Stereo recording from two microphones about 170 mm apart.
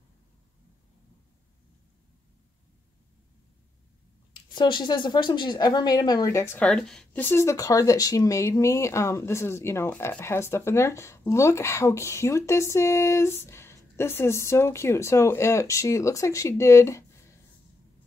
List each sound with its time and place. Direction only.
4.6 s a woman's voice: 25° left (ahead or behind)